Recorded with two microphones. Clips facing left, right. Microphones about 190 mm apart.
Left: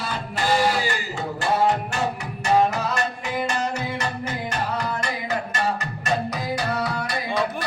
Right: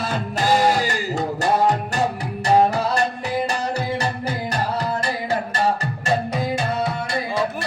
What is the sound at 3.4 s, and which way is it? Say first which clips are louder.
Music: right 2 dB; 35° right (ahead or behind).